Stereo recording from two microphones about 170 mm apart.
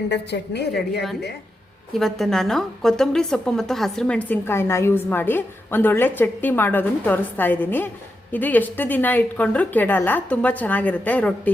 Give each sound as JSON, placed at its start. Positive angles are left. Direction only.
{"t": 0.1, "sound": "a woman's voice", "side_deg": 80}
{"t": 1.9, "sound": "a woman's voice", "side_deg": 0}